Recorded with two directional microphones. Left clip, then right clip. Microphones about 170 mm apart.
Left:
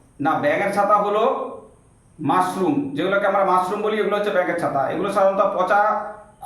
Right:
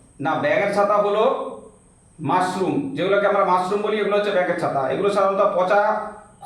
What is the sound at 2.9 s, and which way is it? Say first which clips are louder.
A man's voice: right 3 dB; 20° left (ahead or behind).